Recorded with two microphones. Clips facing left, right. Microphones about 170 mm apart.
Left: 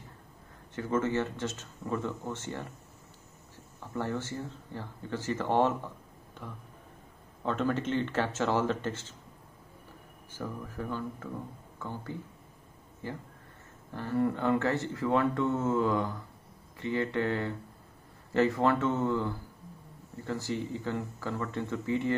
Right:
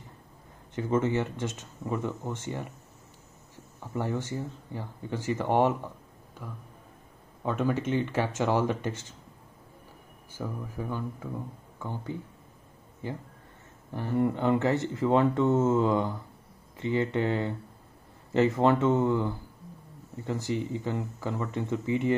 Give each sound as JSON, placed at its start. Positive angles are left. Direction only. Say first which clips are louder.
{"t": 0.7, "sound": "speech", "louder": "right 3 dB", "side_deg": -20}
{"t": 3.9, "sound": "speech", "louder": "right 2 dB", "side_deg": -15}
{"t": 7.4, "sound": "speech", "louder": "right 2 dB", "side_deg": -10}
{"t": 10.3, "sound": "speech", "louder": "right 2 dB", "side_deg": -10}